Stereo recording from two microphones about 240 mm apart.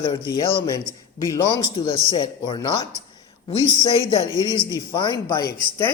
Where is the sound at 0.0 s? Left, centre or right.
Centre.